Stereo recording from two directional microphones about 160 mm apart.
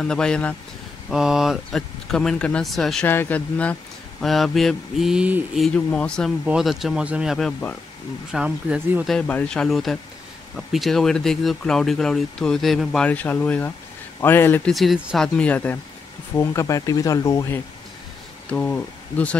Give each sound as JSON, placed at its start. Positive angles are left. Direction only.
{"t": 0.0, "sound": "speech", "side_deg": 5}
{"t": 1.1, "sound": "speech", "side_deg": -5}
{"t": 5.7, "sound": "speech", "side_deg": 5}
{"t": 9.1, "sound": "speech", "side_deg": 5}
{"t": 14.7, "sound": "speech", "side_deg": 0}
{"t": 15.2, "sound": "speech", "side_deg": 5}